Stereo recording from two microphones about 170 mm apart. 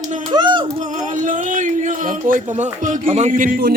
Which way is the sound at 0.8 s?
45° right (ahead or behind).